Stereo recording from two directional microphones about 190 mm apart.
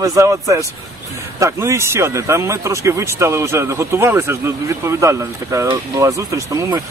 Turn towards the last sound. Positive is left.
turn(degrees=-20)  # may be behind; listen again after turning